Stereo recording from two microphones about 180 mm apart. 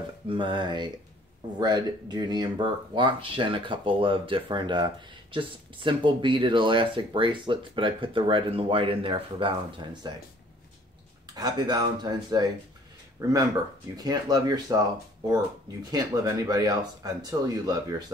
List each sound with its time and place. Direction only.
0.3 s speech: 25° right (ahead or behind)
11.3 s speech: 20° right (ahead or behind)
15.9 s speech: 20° right (ahead or behind)